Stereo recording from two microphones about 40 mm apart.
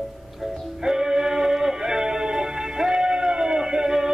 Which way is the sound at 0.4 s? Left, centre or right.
Centre.